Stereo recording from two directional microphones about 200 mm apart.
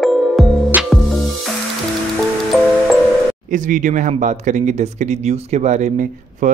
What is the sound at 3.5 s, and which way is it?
Speech, 40° right (ahead or behind).